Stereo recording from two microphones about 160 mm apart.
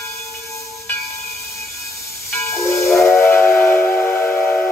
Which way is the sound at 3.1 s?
15° left (ahead or behind).